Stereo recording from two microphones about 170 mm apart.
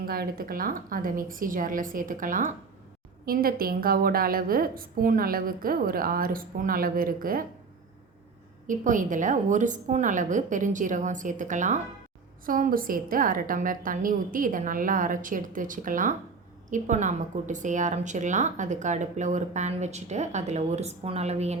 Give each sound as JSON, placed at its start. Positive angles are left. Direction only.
{"t": 0.0, "sound": "a woman's voice", "side_deg": -60}
{"t": 8.6, "sound": "a woman's voice", "side_deg": -50}